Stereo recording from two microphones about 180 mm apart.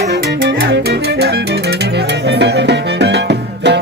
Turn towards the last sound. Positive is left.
turn(degrees=-70)  # may be behind; listen again after turning